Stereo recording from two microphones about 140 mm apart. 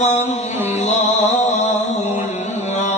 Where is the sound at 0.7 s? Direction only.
55° left (ahead or behind).